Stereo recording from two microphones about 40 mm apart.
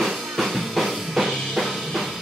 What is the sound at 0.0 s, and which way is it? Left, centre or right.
Drum kit, centre.